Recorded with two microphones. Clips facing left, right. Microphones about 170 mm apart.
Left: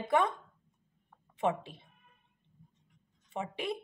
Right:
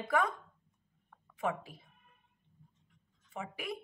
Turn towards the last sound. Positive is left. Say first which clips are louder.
# left 5 dB
turn(degrees=25)  # may be behind; listen again after turning